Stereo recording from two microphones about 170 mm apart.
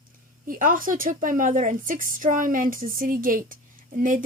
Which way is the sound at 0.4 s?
55° right (ahead or behind).